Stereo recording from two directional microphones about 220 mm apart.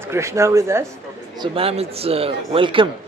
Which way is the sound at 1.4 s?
25° right (ahead or behind).